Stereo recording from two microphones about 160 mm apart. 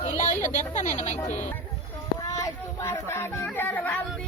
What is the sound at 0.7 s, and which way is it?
Speech, 50° left (ahead or behind).